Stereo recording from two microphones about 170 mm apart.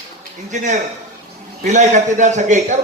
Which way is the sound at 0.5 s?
45° right (ahead or behind).